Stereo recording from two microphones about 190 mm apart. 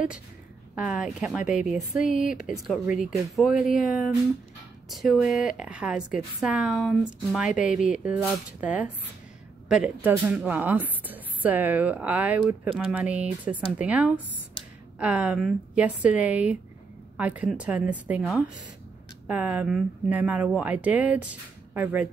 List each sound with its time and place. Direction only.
0.7 s a woman's voice: 5° right (ahead or behind)
1.4 s speech: 40° left (ahead or behind)
3.0 s a woman's voice: centre (ahead or behind)